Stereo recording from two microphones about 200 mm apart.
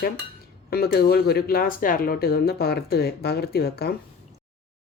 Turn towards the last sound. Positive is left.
turn(degrees=50)  # may be behind; listen again after turning